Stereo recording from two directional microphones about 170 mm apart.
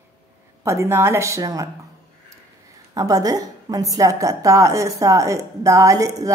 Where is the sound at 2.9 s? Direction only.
20° right (ahead or behind).